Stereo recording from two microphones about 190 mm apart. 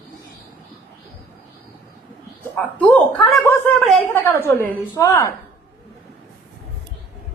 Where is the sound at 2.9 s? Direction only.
10° left (ahead or behind).